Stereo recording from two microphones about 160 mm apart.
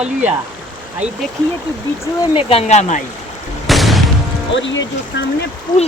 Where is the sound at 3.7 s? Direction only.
Centre (ahead or behind).